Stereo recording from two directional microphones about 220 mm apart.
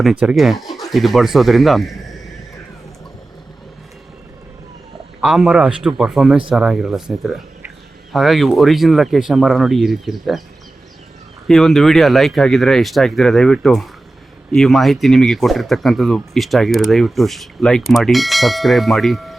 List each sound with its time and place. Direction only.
0.0 s speech: 5° right (ahead or behind)
5.2 s speech: centre (ahead or behind)
11.4 s speech: centre (ahead or behind)